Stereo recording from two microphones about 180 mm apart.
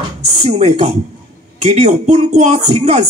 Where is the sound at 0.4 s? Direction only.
40° right (ahead or behind).